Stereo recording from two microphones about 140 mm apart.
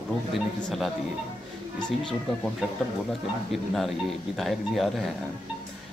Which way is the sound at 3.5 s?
Centre (ahead or behind).